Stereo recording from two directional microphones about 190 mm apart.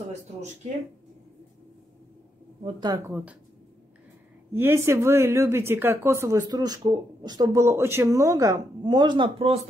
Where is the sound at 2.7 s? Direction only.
20° right (ahead or behind).